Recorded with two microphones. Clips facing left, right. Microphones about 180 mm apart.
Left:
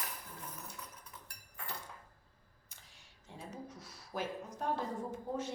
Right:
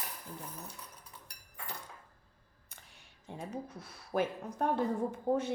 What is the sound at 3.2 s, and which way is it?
A woman's voice, 55° right (ahead or behind).